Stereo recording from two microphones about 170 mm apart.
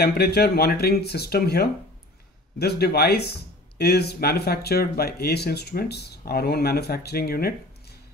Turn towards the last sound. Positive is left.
turn(degrees=65)  # may be behind; listen again after turning